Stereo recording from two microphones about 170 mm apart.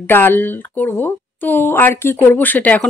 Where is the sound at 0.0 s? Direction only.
10° left (ahead or behind).